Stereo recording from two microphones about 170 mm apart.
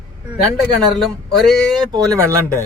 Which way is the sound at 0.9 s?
Centre (ahead or behind).